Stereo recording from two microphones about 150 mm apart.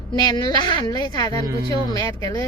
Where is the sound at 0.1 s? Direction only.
30° left (ahead or behind).